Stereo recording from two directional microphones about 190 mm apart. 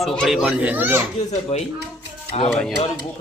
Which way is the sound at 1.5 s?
35° left (ahead or behind).